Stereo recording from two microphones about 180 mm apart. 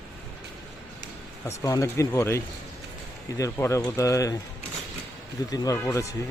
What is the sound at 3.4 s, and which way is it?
Speech, 15° left (ahead or behind).